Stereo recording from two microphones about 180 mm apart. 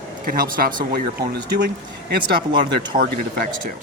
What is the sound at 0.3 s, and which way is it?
Speech, 55° right (ahead or behind).